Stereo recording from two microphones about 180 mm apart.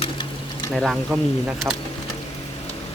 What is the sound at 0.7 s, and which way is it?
Speech, centre (ahead or behind).